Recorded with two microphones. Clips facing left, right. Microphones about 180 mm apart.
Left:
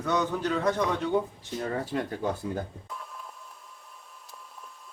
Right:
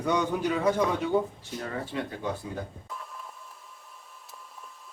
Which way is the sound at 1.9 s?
45° left (ahead or behind).